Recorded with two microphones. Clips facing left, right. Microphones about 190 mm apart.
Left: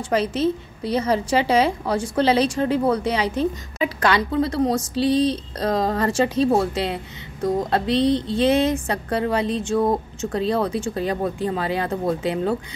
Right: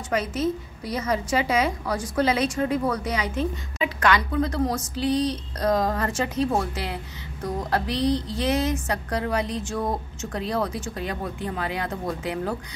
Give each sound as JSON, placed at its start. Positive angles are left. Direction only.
{"t": 0.1, "sound": "a woman's voice", "side_deg": 30}